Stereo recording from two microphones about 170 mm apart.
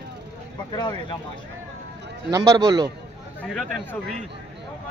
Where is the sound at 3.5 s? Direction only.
Centre (ahead or behind).